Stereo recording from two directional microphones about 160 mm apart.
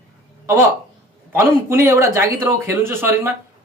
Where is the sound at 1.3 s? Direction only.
15° right (ahead or behind).